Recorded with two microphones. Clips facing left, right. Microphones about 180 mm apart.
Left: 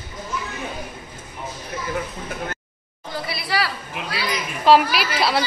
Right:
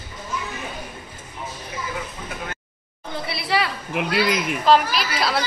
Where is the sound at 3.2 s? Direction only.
25° right (ahead or behind).